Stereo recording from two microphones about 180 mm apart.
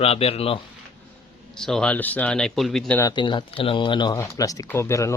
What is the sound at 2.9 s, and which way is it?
Speech, 20° left (ahead or behind).